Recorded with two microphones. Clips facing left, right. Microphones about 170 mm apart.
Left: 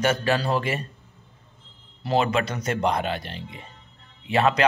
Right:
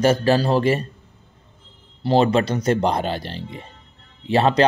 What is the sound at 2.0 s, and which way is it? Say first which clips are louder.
Speech: right 6 dB; 30° right (ahead or behind).